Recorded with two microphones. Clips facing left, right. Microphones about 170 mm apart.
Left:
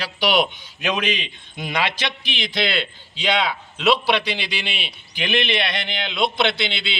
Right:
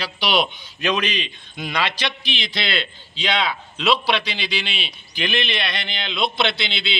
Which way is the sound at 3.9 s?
15° left (ahead or behind).